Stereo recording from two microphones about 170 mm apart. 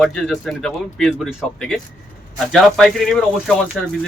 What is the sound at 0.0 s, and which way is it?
A man's voice, centre (ahead or behind).